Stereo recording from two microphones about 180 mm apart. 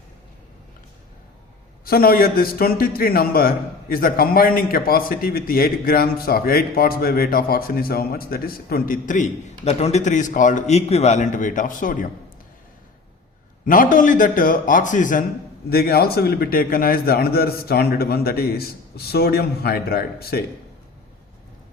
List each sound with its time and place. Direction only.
1.8 s a man's voice: 55° left (ahead or behind)
9.6 s a man's voice: 35° left (ahead or behind)
13.7 s a man's voice: 50° left (ahead or behind)
15.7 s a man's voice: 60° left (ahead or behind)